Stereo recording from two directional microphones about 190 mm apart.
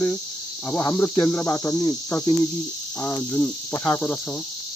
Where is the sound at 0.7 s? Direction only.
10° left (ahead or behind).